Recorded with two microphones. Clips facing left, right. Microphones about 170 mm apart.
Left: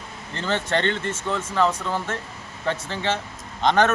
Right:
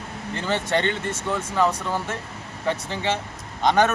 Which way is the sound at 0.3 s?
15° right (ahead or behind).